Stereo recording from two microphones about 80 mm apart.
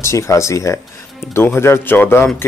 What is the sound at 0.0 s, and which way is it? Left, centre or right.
Speech, left.